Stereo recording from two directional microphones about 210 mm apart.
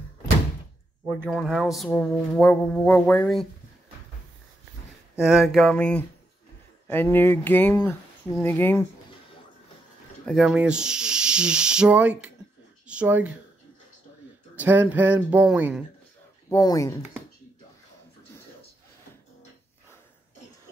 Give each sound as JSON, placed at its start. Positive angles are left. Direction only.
{"t": 1.0, "sound": "speech", "side_deg": -5}
{"t": 5.2, "sound": "speech", "side_deg": 0}
{"t": 10.2, "sound": "speech", "side_deg": 0}
{"t": 14.5, "sound": "speech", "side_deg": -10}
{"t": 16.4, "sound": "speech", "side_deg": 15}